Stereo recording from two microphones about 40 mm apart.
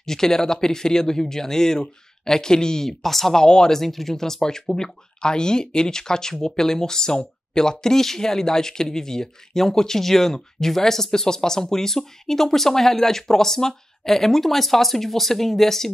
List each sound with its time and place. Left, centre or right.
0.0 s speech: centre
3.4 s speech: centre
3.8 s speech: centre